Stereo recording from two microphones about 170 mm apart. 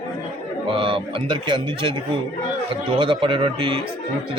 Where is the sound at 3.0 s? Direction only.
30° right (ahead or behind).